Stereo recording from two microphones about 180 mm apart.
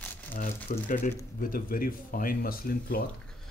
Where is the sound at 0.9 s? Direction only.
50° left (ahead or behind).